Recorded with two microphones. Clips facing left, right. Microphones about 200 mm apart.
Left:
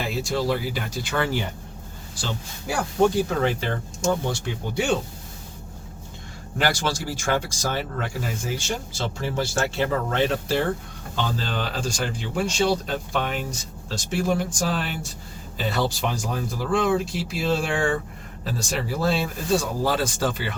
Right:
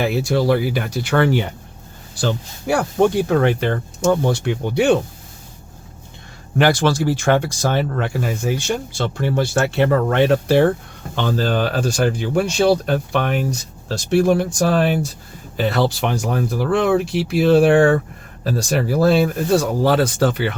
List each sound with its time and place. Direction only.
0.0 s speech: 65° right (ahead or behind)
6.6 s speech: 60° right (ahead or behind)